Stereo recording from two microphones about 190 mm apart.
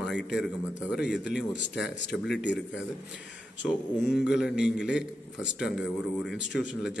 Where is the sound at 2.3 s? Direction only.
65° left (ahead or behind).